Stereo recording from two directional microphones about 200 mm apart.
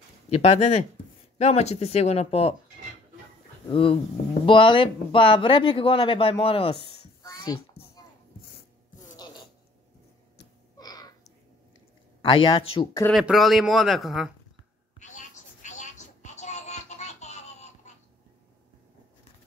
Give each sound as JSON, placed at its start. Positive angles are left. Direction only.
{"t": 0.3, "sound": "speech", "side_deg": 30}
{"t": 3.6, "sound": "speech", "side_deg": 25}
{"t": 7.2, "sound": "a sound", "side_deg": 20}
{"t": 10.8, "sound": "a sound", "side_deg": 20}
{"t": 12.2, "sound": "speech", "side_deg": 25}
{"t": 13.1, "sound": "speech", "side_deg": 0}
{"t": 15.0, "sound": "music", "side_deg": 35}